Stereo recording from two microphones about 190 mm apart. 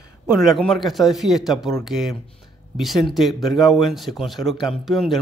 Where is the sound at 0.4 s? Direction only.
Centre (ahead or behind).